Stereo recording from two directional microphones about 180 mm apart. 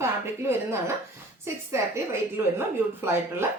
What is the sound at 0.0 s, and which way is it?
Speech, 15° right (ahead or behind).